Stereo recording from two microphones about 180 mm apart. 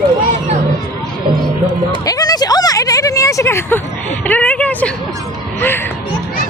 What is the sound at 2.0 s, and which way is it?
A woman's voice, 20° left (ahead or behind).